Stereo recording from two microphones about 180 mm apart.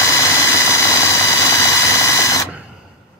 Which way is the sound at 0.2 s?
15° left (ahead or behind).